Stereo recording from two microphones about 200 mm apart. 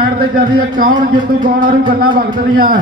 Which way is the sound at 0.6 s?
45° right (ahead or behind).